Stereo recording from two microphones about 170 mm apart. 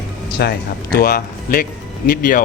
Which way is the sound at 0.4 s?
70° left (ahead or behind).